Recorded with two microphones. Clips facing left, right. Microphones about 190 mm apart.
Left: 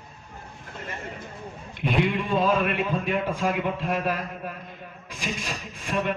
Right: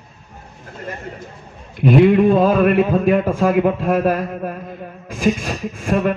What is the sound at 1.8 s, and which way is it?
A man's voice, 55° right (ahead or behind).